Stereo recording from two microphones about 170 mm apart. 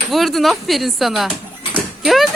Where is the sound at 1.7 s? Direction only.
Centre (ahead or behind).